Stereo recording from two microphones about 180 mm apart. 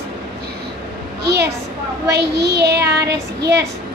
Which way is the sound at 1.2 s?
65° right (ahead or behind).